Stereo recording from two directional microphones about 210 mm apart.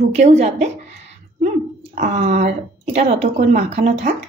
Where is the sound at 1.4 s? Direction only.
35° right (ahead or behind).